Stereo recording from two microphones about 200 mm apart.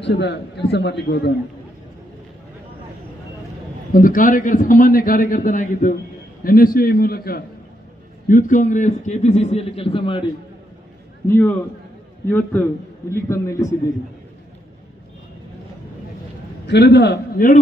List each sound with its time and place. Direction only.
0.0 s a man's voice: 55° left (ahead or behind)
3.9 s a man's voice: 45° left (ahead or behind); by 10.2 s 25° left (ahead or behind)
11.2 s a man's voice: 10° left (ahead or behind)
16.6 s a man's voice: 55° left (ahead or behind)